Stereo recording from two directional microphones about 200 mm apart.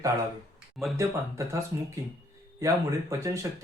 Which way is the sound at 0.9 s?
15° right (ahead or behind).